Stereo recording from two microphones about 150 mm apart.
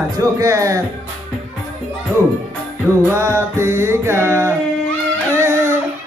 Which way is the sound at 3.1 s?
15° right (ahead or behind).